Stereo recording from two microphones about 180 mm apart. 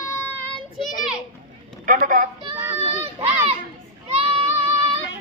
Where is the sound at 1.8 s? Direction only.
50° right (ahead or behind).